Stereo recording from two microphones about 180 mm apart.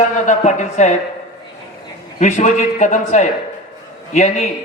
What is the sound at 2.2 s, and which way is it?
A man's voice, 40° left (ahead or behind).